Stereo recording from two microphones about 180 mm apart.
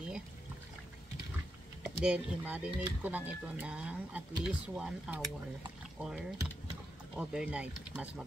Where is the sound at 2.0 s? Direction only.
5° right (ahead or behind).